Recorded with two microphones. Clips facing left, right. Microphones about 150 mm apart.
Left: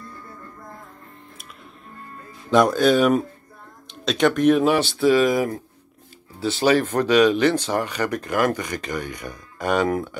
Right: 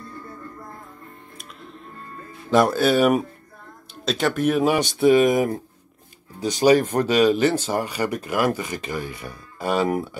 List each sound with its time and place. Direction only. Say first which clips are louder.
2.5 s speech: left 1 dB; 5° right (ahead or behind)
4.9 s speech: right 5 dB; 20° right (ahead or behind)
6.8 s speech: left 1 dB; 10° right (ahead or behind)